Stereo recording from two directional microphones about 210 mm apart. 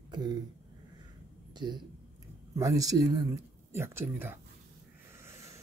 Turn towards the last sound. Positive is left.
turn(degrees=-15)  # may be behind; listen again after turning